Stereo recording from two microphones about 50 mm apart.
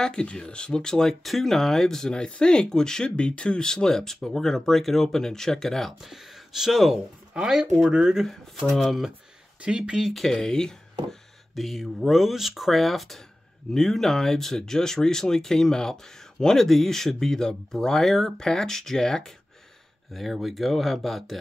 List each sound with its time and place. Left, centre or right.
0.0 s speech: centre
5.9 s speech: centre
8.3 s speech: centre
9.6 s speech: centre
10.0 s speech: centre